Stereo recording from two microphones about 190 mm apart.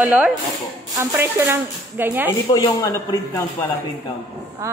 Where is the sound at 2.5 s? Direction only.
20° left (ahead or behind).